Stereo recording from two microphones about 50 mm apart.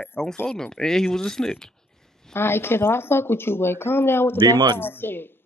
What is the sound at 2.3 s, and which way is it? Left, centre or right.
Speech, left.